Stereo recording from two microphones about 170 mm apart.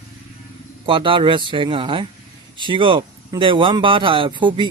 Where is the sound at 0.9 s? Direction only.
30° right (ahead or behind).